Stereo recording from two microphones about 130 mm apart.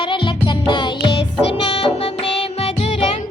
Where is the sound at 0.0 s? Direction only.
40° left (ahead or behind).